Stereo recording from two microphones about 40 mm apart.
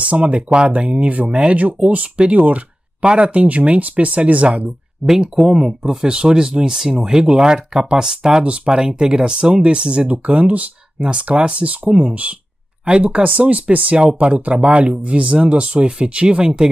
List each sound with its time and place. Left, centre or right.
0.0 s speech: right
1.6 s speech: right
5.2 s speech: centre